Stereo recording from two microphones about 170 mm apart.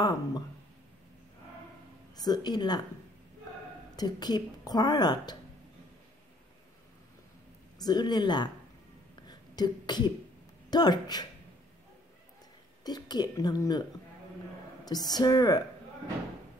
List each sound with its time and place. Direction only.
0.0 s a woman's voice: 25° left (ahead or behind)
2.1 s a woman's voice: 25° left (ahead or behind)
3.9 s a woman's voice: 25° left (ahead or behind)
7.8 s a woman's voice: 25° left (ahead or behind)
9.3 s cough: 25° left (ahead or behind)
10.7 s a woman's voice: 25° left (ahead or behind)
12.8 s a woman's voice: 25° left (ahead or behind)
14.9 s a woman's voice: 25° left (ahead or behind)